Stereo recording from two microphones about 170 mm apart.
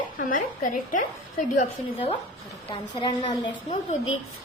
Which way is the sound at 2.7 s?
25° left (ahead or behind).